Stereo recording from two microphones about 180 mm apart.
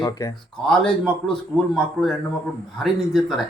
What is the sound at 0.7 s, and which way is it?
Speech, 5° left (ahead or behind).